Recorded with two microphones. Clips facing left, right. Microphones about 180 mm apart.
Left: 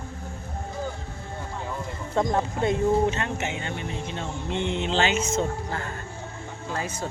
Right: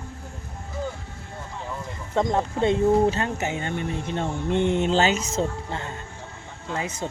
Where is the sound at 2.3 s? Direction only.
25° right (ahead or behind).